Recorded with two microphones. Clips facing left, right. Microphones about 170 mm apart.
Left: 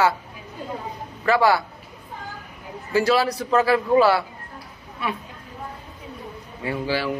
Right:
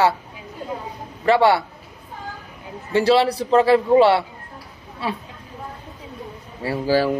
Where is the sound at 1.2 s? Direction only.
25° right (ahead or behind).